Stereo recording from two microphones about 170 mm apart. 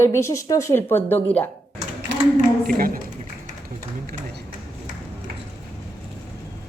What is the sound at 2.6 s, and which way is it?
Speech, 60° right (ahead or behind).